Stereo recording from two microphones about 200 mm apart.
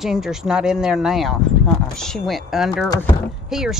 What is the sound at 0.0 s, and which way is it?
Speech, centre (ahead or behind).